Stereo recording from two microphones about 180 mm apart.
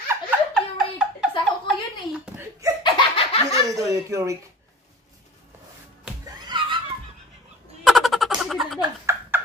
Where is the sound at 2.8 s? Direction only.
25° left (ahead or behind).